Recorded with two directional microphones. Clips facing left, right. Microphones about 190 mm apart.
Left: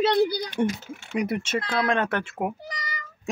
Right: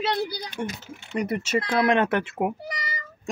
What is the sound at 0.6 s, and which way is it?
Speech, 20° left (ahead or behind).